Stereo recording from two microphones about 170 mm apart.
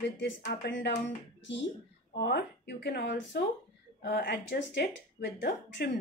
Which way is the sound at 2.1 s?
75° left (ahead or behind).